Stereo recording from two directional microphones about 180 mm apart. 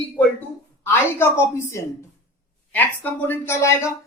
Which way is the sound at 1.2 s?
15° left (ahead or behind).